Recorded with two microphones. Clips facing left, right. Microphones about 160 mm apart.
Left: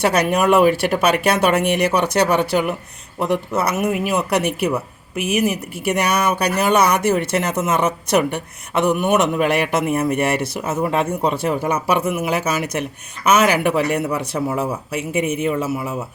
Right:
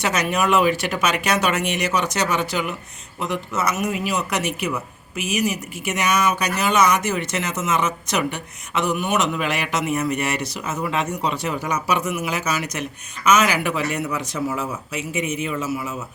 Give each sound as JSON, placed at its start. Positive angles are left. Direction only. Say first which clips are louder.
{"t": 0.0, "sound": "speech", "louder": "left 5 dB", "side_deg": 55}